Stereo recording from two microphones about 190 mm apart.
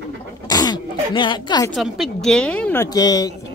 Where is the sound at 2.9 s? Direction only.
20° left (ahead or behind).